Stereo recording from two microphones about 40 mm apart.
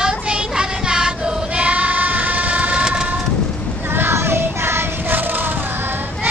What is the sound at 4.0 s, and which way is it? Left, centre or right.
Child singing, right.